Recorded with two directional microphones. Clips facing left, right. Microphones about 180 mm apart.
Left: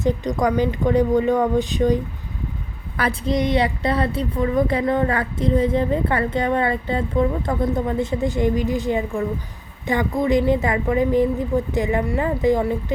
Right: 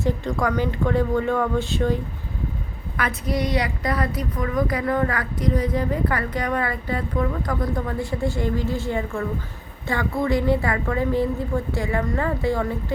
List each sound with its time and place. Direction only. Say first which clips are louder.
0.0 s a woman's voice: left 3 dB; 20° left (ahead or behind)
3.0 s a woman's voice: left 4 dB; 30° left (ahead or behind)